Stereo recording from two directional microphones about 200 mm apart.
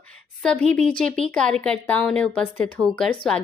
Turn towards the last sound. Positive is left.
turn(degrees=5)  # may be behind; listen again after turning